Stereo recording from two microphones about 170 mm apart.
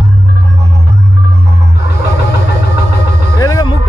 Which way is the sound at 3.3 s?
20° left (ahead or behind).